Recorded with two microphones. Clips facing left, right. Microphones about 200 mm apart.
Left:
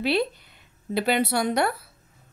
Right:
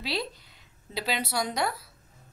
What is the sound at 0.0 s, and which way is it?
A woman's voice, 60° left (ahead or behind).